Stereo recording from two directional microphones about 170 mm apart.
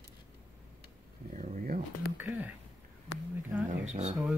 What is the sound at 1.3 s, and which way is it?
Speech, 50° right (ahead or behind).